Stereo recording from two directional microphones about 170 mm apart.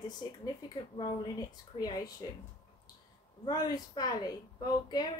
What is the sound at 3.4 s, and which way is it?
Speech, 25° left (ahead or behind).